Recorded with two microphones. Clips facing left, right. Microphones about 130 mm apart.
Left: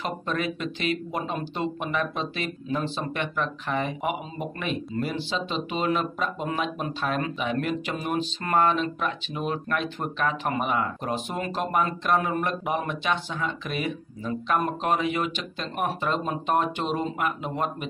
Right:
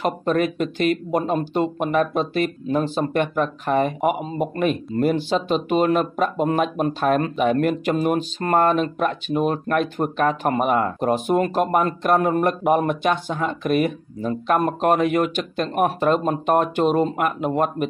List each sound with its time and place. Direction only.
0.0 s speech: 50° right (ahead or behind)